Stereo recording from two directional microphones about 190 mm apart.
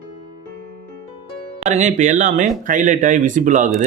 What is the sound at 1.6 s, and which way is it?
Speech, 40° right (ahead or behind).